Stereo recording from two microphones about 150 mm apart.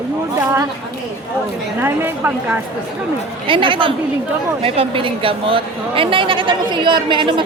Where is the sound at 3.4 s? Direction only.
35° right (ahead or behind).